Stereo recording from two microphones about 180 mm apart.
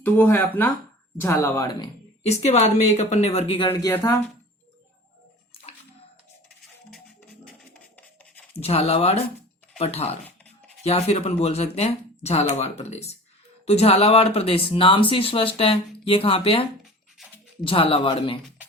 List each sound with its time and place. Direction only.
0.0 s speech: 10° left (ahead or behind)
2.2 s speech: 35° left (ahead or behind)
3.7 s speech: 10° left (ahead or behind)
7.7 s scratch: 5° left (ahead or behind)
8.6 s speech: 35° left (ahead or behind)
16.8 s a sound: centre (ahead or behind)
17.6 s speech: 30° left (ahead or behind)